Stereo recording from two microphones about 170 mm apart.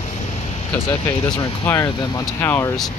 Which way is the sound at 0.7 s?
20° left (ahead or behind).